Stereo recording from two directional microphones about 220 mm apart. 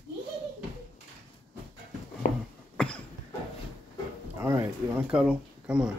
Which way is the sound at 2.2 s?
35° left (ahead or behind).